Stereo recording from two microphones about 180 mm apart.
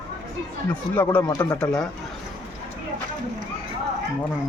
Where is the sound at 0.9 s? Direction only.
10° left (ahead or behind).